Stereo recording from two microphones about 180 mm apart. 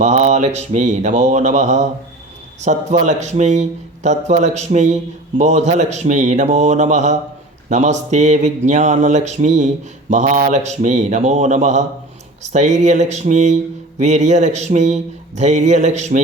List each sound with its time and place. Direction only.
0.0 s speech: 40° right (ahead or behind)